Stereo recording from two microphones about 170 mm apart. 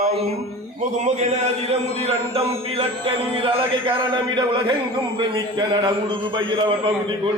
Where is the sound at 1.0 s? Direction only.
40° right (ahead or behind).